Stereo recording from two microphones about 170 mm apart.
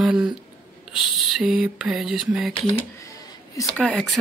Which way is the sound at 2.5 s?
20° left (ahead or behind).